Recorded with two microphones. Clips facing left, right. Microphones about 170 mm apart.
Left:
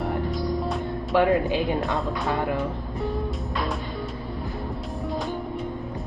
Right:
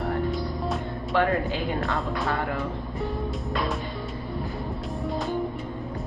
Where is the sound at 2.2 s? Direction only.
20° left (ahead or behind).